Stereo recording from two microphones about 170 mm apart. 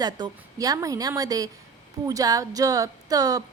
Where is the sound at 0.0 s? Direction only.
20° right (ahead or behind).